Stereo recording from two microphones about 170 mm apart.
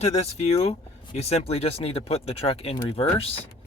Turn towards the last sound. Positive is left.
turn(degrees=35)  # may be behind; listen again after turning